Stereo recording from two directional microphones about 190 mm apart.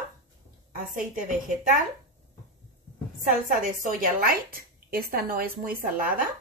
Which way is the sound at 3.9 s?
50° right (ahead or behind).